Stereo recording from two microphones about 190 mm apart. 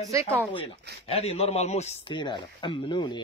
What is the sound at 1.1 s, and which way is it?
A man's voice, 30° left (ahead or behind).